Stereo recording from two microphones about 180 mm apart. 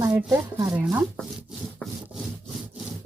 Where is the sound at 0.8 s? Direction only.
Centre (ahead or behind).